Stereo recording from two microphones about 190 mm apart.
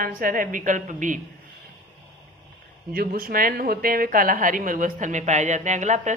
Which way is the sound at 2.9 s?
50° right (ahead or behind).